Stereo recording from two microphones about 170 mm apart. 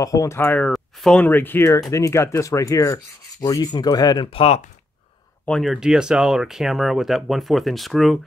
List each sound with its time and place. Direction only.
0.0 s speech: 20° left (ahead or behind)
1.9 s rub: 20° left (ahead or behind); by 4.6 s 35° left (ahead or behind)
5.4 s speech: 5° left (ahead or behind)